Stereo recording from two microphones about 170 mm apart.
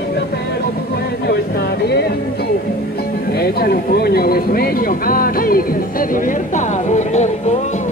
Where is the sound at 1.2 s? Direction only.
70° left (ahead or behind).